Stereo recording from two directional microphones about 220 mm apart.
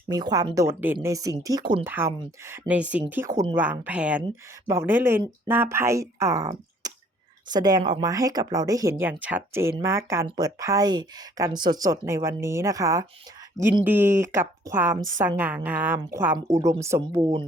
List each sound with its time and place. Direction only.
0.1 s speech: 15° right (ahead or behind)